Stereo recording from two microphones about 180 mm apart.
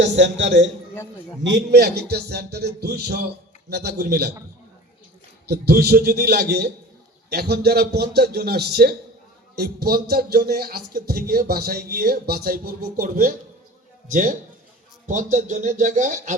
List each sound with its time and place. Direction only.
0.0 s a man's voice: 85° right
1.5 s speech: 65° right (ahead or behind)
5.5 s speech: 60° right (ahead or behind); by 16.3 s 45° right (ahead or behind)